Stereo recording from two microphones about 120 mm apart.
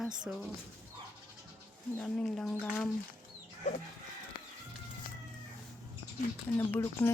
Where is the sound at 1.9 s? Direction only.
10° left (ahead or behind).